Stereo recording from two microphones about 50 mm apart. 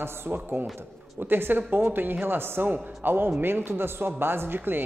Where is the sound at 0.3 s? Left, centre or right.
Right.